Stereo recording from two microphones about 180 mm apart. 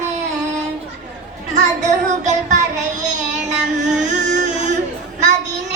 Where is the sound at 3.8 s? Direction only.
40° right (ahead or behind).